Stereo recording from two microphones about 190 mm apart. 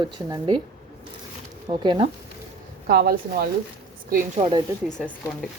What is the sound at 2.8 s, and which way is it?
Speech, 55° right (ahead or behind).